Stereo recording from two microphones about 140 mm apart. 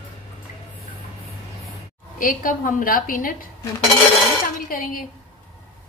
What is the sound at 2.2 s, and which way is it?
A woman's voice, 75° left (ahead or behind).